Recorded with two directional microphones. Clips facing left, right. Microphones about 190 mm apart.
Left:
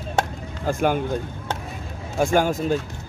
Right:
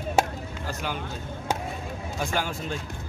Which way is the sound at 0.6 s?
50° left (ahead or behind).